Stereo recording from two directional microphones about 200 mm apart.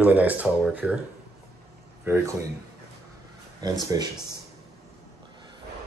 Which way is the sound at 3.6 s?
20° right (ahead or behind).